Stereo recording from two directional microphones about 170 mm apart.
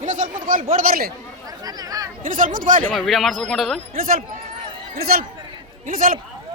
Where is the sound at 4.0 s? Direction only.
55° right (ahead or behind).